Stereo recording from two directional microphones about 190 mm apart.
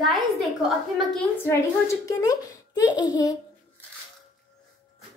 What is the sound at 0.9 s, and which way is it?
A child's voice, 5° left (ahead or behind).